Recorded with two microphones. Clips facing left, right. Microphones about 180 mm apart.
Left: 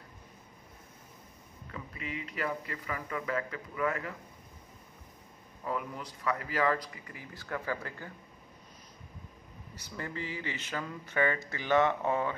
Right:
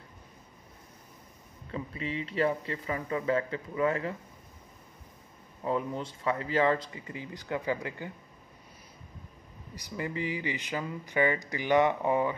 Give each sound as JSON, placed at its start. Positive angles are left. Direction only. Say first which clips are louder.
{"t": 1.7, "sound": "speech", "louder": "right 6 dB", "side_deg": -30}
{"t": 5.6, "sound": "speech", "louder": "right 5 dB", "side_deg": -25}
{"t": 9.8, "sound": "speech", "louder": "right 5 dB", "side_deg": -15}